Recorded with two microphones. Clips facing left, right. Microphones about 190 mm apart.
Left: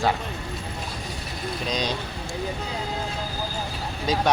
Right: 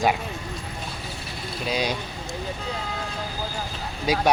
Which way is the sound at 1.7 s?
10° right (ahead or behind).